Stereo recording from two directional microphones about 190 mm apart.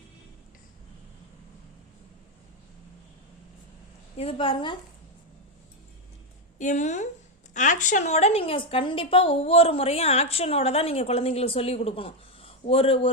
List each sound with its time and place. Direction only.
4.2 s a woman's voice: 30° left (ahead or behind)
6.6 s a woman's voice: 40° left (ahead or behind)